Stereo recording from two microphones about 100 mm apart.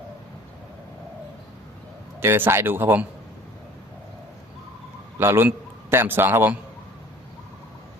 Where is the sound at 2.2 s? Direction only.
25° right (ahead or behind).